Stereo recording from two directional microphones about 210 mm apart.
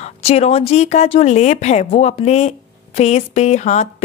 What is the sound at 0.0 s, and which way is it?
Speech, 30° left (ahead or behind).